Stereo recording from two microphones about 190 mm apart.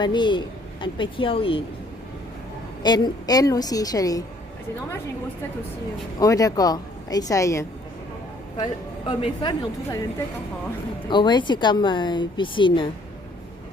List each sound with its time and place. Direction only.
0.0 s a woman's voice: 25° left (ahead or behind)
2.8 s a woman's voice: 20° left (ahead or behind)
6.1 s a woman's voice: 20° left (ahead or behind)
8.5 s a woman's voice: 25° left (ahead or behind)
11.1 s a woman's voice: 25° left (ahead or behind)